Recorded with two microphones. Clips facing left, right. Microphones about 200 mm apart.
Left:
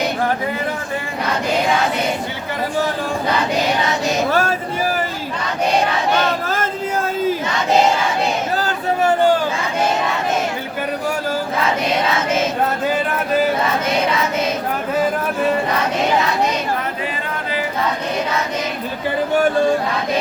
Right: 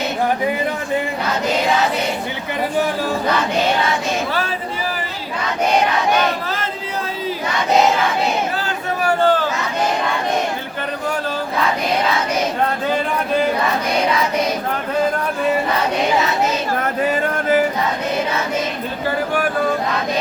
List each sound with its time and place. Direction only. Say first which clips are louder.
4.3 s speech: left 5 dB; 45° left (ahead or behind)
9.2 s a sound: right 1 dB; 15° left (ahead or behind)
19.3 s music: left 7 dB; 25° left (ahead or behind)